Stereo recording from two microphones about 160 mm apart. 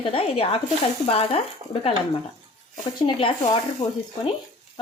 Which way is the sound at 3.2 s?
35° left (ahead or behind).